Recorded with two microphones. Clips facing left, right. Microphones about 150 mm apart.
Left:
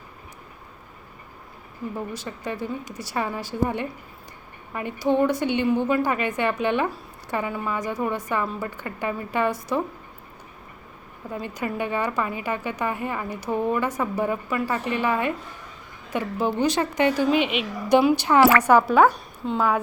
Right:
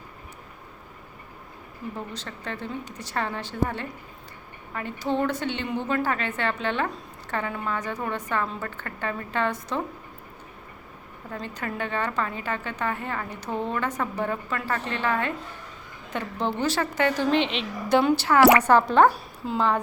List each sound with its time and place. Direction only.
2.1 s a woman's voice: 15° left (ahead or behind)
11.3 s a woman's voice: 10° left (ahead or behind); by 19.6 s 5° right (ahead or behind)